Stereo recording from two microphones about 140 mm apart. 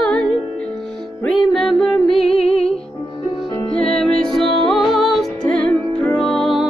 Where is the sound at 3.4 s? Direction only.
10° left (ahead or behind).